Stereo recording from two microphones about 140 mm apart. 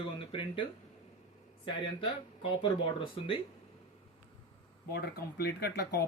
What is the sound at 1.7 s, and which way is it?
Speech, 35° left (ahead or behind).